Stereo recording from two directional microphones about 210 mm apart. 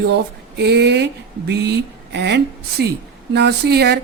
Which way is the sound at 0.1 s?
55° right (ahead or behind).